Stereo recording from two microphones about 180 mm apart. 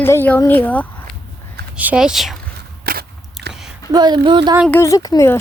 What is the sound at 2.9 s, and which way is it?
Biting, 55° right (ahead or behind).